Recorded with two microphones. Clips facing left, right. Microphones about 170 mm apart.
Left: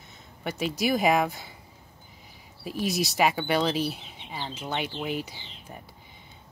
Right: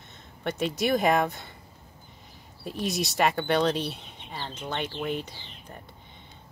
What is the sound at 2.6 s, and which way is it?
Speech, 5° left (ahead or behind).